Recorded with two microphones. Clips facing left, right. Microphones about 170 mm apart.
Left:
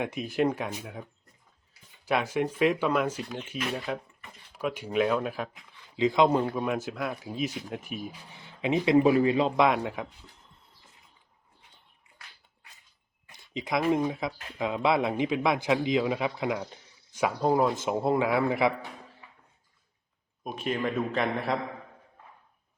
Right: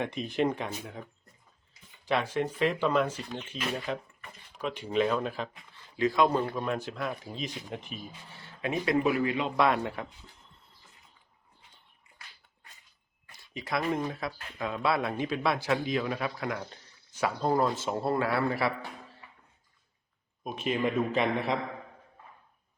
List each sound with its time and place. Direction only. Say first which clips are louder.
0.0 s a man's voice: left 2 dB; 5° left (ahead or behind)
2.0 s speech: left 2 dB; 10° left (ahead or behind)
6.0 s a man's voice: left 3 dB; 20° left (ahead or behind)
8.3 s a man's voice: left 5 dB; 15° left (ahead or behind)
9.6 s speech: right 1 dB; 15° left (ahead or behind)
13.3 s speech: left 3 dB; 20° left (ahead or behind)
20.4 s a man's voice: right 1 dB; centre (ahead or behind)